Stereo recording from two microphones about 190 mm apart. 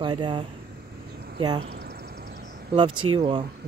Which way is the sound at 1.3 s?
25° right (ahead or behind).